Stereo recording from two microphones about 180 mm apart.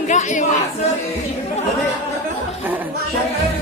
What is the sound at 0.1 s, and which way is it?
Chatter, 45° left (ahead or behind).